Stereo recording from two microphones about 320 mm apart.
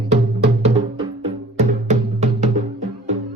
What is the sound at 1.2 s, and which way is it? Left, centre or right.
Music, right.